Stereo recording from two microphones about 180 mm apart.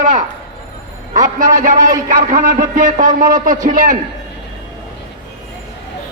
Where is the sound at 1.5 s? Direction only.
45° right (ahead or behind).